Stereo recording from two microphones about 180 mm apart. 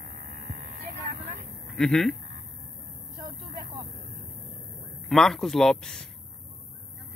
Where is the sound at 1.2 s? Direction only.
55° right (ahead or behind).